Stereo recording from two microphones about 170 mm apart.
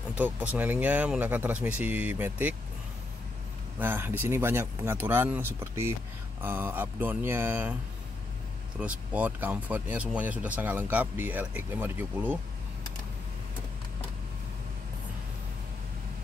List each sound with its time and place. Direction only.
0.1 s speech: 10° right (ahead or behind)
3.8 s speech: 15° right (ahead or behind)
8.7 s speech: 10° right (ahead or behind)